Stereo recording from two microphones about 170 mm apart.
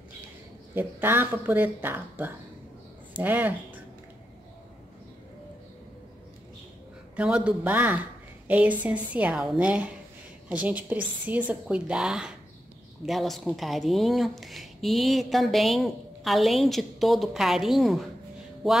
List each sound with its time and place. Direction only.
0.7 s a woman's voice: 10° right (ahead or behind)
7.2 s a woman's voice: 5° right (ahead or behind)